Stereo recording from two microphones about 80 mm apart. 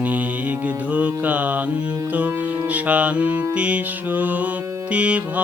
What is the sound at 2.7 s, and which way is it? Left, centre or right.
Music, centre.